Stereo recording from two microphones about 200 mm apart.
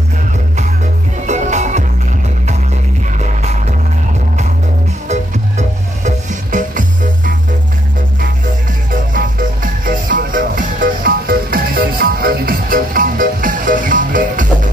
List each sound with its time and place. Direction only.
1.2 s music: 35° right (ahead or behind)
3.1 s music: 35° right (ahead or behind)
5.0 s music: 35° right (ahead or behind)
9.1 s music: 45° right (ahead or behind)